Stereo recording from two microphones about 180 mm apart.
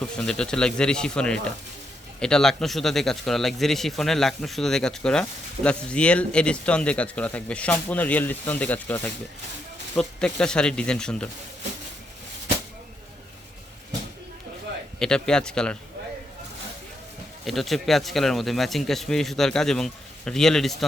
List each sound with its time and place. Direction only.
0.3 s speech: 5° left (ahead or behind)
14.9 s speech: 5° left (ahead or behind)
17.4 s speech: centre (ahead or behind)